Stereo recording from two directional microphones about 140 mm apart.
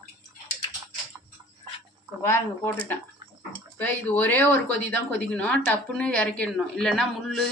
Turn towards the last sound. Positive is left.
turn(degrees=5)  # may be behind; listen again after turning